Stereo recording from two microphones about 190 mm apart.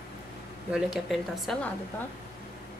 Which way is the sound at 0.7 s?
Centre (ahead or behind).